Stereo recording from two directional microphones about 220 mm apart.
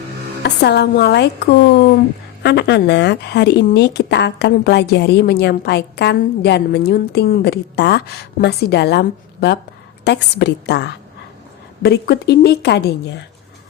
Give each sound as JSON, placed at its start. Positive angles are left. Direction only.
{"t": 0.4, "sound": "a woman's voice", "side_deg": 50}
{"t": 2.4, "sound": "a woman's voice", "side_deg": 50}